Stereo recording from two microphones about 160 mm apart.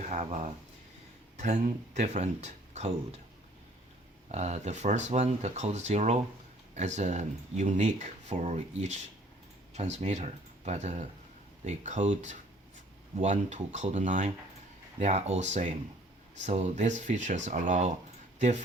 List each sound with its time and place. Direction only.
0.1 s speech: 45° right (ahead or behind)
4.3 s speech: 45° right (ahead or behind)